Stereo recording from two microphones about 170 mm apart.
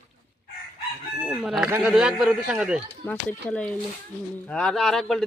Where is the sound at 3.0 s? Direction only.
5° left (ahead or behind).